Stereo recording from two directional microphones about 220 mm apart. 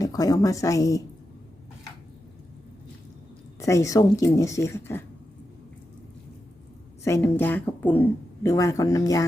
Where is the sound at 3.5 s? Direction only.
15° left (ahead or behind).